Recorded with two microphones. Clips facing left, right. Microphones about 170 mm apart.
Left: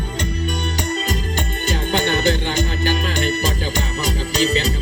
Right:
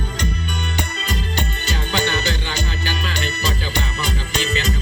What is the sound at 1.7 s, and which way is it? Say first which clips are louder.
Music: left 4 dB; 50° left (ahead or behind).